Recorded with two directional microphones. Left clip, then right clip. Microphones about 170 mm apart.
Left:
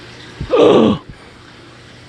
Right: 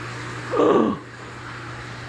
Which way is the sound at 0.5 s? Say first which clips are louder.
Left 8 dB; 90° left.